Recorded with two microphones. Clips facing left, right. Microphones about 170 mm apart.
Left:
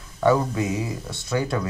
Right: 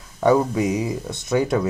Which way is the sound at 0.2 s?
20° right (ahead or behind).